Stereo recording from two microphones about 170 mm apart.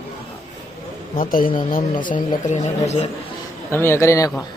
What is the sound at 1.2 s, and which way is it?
Speech, 55° left (ahead or behind).